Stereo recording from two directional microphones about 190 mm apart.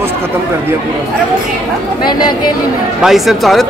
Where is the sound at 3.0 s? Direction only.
Centre (ahead or behind).